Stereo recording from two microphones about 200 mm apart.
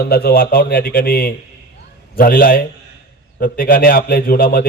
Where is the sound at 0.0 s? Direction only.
50° left (ahead or behind).